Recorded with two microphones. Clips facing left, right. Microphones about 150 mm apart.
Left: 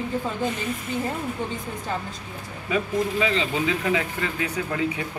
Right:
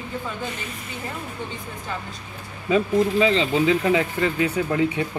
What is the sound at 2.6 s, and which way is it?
Speech, 30° right (ahead or behind).